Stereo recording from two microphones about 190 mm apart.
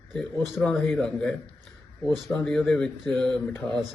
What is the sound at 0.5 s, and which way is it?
Speech, 10° left (ahead or behind).